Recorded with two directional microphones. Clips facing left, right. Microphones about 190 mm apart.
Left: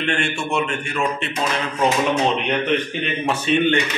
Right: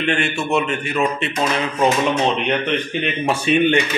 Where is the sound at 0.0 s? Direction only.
5° right (ahead or behind).